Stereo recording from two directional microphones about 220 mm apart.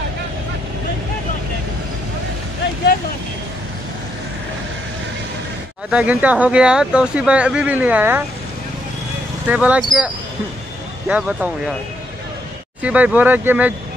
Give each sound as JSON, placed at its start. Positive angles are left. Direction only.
{"t": 5.9, "sound": "speech", "side_deg": -5}
{"t": 9.5, "sound": "speech", "side_deg": -5}
{"t": 12.8, "sound": "speech", "side_deg": -5}